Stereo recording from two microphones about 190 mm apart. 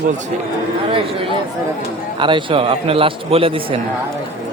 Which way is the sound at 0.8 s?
30° right (ahead or behind).